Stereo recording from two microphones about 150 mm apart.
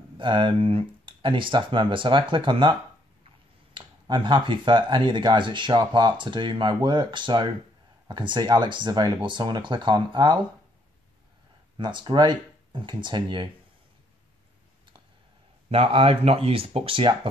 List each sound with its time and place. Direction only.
0.2 s speech: 35° right (ahead or behind)
11.7 s speech: 30° right (ahead or behind)
15.7 s speech: 40° right (ahead or behind)